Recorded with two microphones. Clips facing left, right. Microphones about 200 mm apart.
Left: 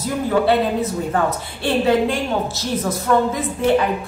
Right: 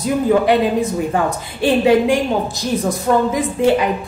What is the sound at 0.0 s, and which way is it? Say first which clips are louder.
A woman's voice: right 4 dB; 15° right (ahead or behind).